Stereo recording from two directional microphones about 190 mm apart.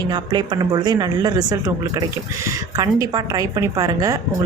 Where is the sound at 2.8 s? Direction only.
20° right (ahead or behind).